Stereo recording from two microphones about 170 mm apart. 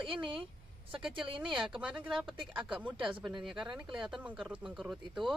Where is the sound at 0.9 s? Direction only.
5° right (ahead or behind).